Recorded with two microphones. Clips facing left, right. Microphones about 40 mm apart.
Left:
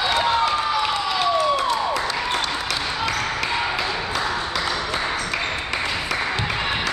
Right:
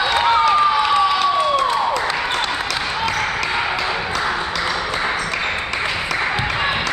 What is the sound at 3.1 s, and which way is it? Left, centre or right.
Basketball bounce, right.